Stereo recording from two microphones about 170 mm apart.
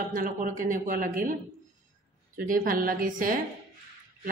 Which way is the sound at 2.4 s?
55° right (ahead or behind).